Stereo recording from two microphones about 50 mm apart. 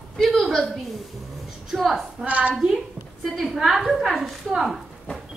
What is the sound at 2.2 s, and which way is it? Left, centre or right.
Speech, right.